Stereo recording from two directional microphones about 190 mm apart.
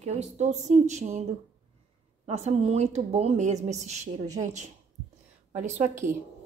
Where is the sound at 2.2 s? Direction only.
35° right (ahead or behind).